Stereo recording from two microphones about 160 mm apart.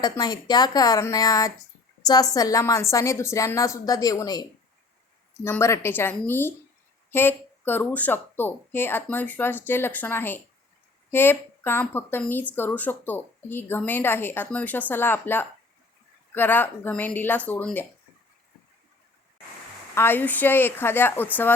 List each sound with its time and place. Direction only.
0.0 s a woman's voice: 25° left (ahead or behind); by 17.8 s 10° left (ahead or behind)
19.9 s speech: 15° left (ahead or behind)